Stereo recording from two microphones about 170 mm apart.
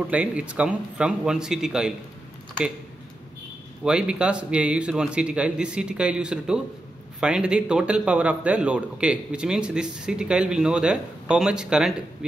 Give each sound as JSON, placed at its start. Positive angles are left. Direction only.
{"t": 0.1, "sound": "a man's voice", "side_deg": -5}
{"t": 3.8, "sound": "a man's voice", "side_deg": -5}